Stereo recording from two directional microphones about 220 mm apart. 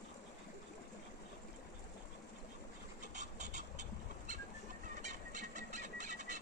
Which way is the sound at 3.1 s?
35° right (ahead or behind).